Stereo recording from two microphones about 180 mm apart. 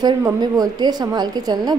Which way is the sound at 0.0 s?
20° right (ahead or behind).